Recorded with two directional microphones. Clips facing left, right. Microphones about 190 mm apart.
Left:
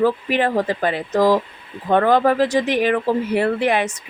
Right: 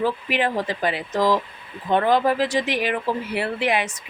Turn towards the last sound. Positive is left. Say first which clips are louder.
# left 5 dB
turn(degrees=50)  # may be behind; listen again after turning